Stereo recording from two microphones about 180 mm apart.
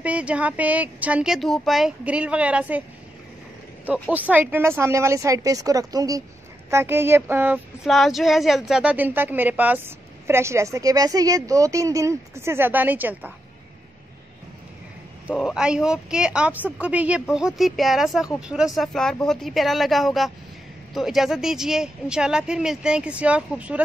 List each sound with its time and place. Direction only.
0.0 s speech: 5° right (ahead or behind)
4.1 s speech: 10° right (ahead or behind)
15.2 s speech: centre (ahead or behind)